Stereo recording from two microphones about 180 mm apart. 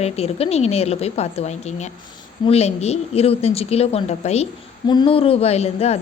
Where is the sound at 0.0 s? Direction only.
35° left (ahead or behind).